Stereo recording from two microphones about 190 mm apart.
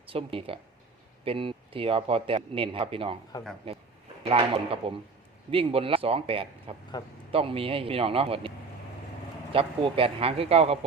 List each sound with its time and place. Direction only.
0.0 s speech: 30° right (ahead or behind)
4.2 s speech: 30° right (ahead or behind)
6.9 s a man's voice: 20° left (ahead or behind)
7.3 s speech: 30° right (ahead or behind)